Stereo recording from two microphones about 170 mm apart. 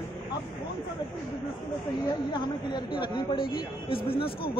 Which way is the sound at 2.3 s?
25° left (ahead or behind).